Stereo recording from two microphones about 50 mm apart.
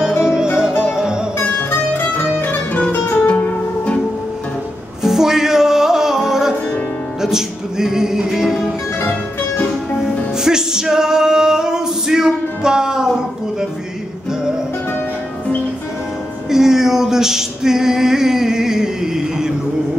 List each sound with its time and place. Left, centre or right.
0.8 s music: centre
3.3 s music: left
5.0 s music: centre
10.3 s music: centre
16.4 s music: centre